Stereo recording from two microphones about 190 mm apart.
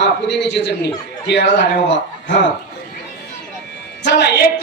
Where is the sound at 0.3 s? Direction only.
65° left (ahead or behind).